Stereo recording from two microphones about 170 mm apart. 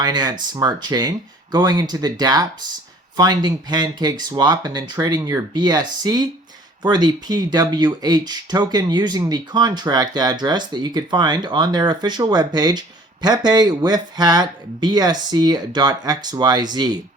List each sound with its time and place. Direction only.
0.0 s speech: 25° right (ahead or behind)